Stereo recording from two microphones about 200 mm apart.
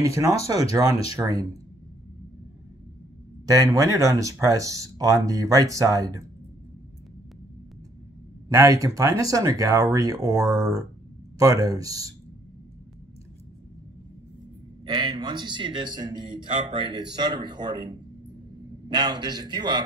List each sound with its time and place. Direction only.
0.0 s speech: 15° right (ahead or behind)
3.4 s speech: 15° right (ahead or behind)
8.5 s speech: 15° right (ahead or behind)
14.9 s a man's voice: 25° right (ahead or behind)